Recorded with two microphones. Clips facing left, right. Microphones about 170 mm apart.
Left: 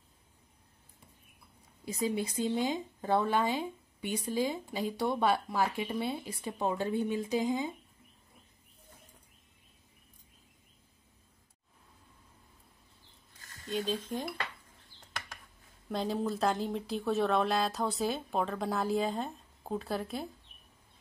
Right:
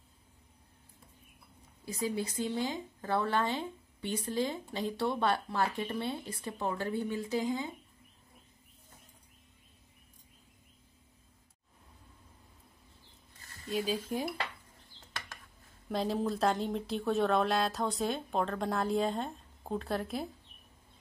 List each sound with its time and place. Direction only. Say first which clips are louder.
1.9 s speech: left 2 dB; 20° left (ahead or behind)
13.7 s speech: right 1 dB; 5° right (ahead or behind)
15.9 s speech: right 1 dB; centre (ahead or behind)